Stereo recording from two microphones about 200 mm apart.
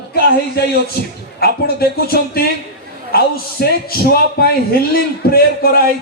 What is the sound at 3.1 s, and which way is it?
A man's voice, 50° left (ahead or behind).